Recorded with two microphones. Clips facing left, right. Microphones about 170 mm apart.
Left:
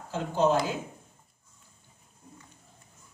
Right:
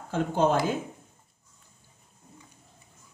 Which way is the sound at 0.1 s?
50° right (ahead or behind).